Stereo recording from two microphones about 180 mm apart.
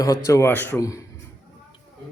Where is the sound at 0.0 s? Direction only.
20° left (ahead or behind).